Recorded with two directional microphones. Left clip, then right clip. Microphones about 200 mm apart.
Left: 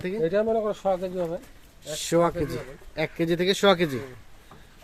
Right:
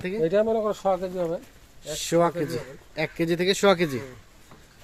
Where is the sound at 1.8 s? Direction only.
Centre (ahead or behind).